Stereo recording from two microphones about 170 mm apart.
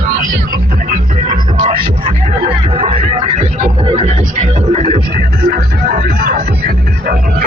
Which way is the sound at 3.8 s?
30° right (ahead or behind).